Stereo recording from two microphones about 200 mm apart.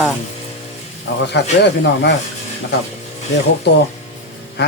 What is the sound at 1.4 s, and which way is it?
Speech, 60° left (ahead or behind).